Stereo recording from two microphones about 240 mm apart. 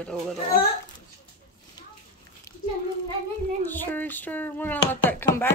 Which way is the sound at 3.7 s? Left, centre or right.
Centre.